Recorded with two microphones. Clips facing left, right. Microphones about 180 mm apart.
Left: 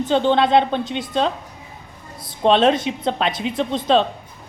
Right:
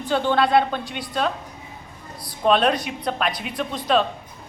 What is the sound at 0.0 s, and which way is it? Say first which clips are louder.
A woman's voice: left 4 dB; 25° left (ahead or behind).